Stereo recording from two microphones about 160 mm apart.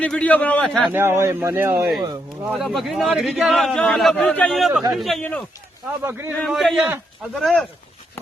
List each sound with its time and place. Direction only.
0.0 s a man's voice: 5° left (ahead or behind)
0.9 s speech: 15° right (ahead or behind)
2.5 s speech: centre (ahead or behind)
6.0 s speech: 15° right (ahead or behind)
6.3 s speech: centre (ahead or behind)